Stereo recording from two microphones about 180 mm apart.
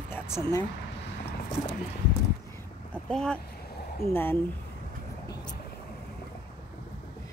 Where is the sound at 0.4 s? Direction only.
20° left (ahead or behind).